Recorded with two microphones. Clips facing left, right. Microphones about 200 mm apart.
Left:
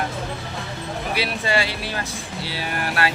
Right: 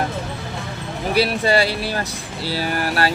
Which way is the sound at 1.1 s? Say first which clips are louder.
Right 6 dB; 40° right (ahead or behind).